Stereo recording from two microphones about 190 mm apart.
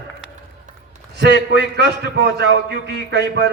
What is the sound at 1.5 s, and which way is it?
A man's voice, 60° right (ahead or behind).